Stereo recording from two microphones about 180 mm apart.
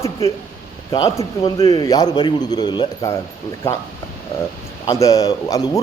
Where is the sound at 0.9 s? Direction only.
20° left (ahead or behind).